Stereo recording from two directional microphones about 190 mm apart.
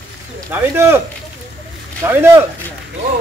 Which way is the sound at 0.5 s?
10° right (ahead or behind).